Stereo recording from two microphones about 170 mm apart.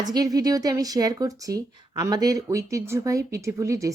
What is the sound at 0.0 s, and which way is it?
A woman's voice, 20° right (ahead or behind).